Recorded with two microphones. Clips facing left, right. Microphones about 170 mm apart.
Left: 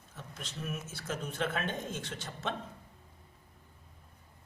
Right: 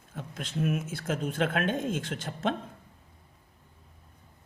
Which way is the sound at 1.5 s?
90° right.